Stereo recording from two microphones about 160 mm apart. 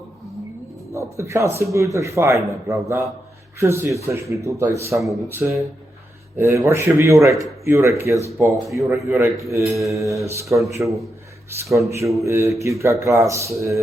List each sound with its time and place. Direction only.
0.9 s a man's voice: 20° right (ahead or behind)
10.8 s a man's voice: centre (ahead or behind)
11.6 s a man's voice: 20° right (ahead or behind)